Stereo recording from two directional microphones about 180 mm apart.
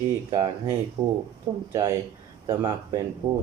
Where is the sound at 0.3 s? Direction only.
20° right (ahead or behind).